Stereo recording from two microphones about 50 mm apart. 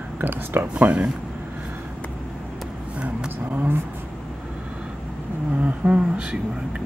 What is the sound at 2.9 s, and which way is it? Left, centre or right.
Vehicle, right.